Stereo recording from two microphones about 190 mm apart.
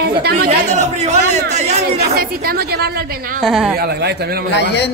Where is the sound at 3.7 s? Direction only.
55° right (ahead or behind).